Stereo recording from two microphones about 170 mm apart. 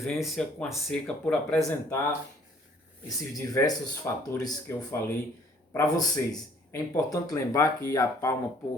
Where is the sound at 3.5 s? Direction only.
20° left (ahead or behind).